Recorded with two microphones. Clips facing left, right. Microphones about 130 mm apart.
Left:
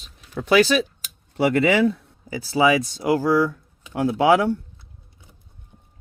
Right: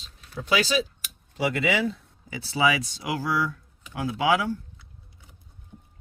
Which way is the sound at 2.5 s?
45° left (ahead or behind).